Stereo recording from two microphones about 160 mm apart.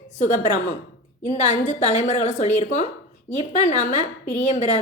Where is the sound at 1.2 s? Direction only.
45° left (ahead or behind).